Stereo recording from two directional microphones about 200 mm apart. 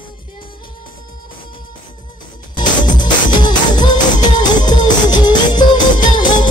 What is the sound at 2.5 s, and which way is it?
Music, 20° left (ahead or behind).